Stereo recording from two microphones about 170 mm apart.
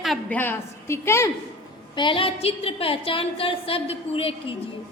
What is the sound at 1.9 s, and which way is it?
A woman's voice, 30° left (ahead or behind).